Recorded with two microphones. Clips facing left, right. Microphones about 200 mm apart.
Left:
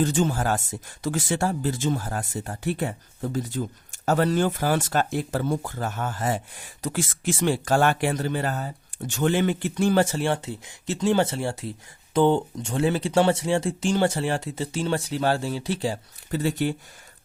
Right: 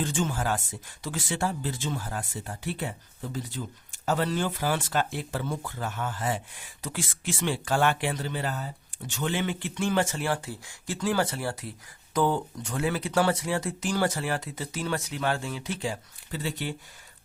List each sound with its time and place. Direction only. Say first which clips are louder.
0.0 s speech: left 6 dB; 40° left (ahead or behind)